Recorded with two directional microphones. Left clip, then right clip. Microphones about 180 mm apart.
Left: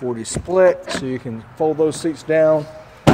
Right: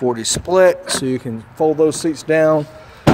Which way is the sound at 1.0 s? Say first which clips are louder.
Right 4 dB; 30° right (ahead or behind).